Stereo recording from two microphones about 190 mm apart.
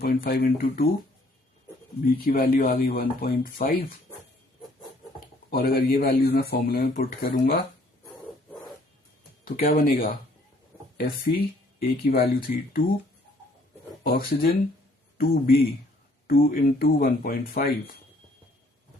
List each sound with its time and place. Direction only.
0.0 s speech: 50° left (ahead or behind)
2.0 s speech: 50° left (ahead or behind)
5.5 s speech: 50° left (ahead or behind)
9.4 s speech: 50° left (ahead or behind)
14.0 s speech: 50° left (ahead or behind)